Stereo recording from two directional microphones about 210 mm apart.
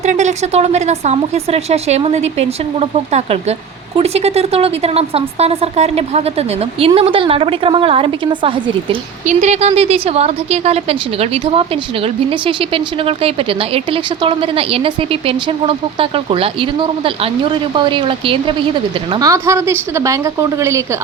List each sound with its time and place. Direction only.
0.0 s speech: 35° right (ahead or behind)
9.2 s a woman's voice: 35° right (ahead or behind); by 20.8 s 15° right (ahead or behind)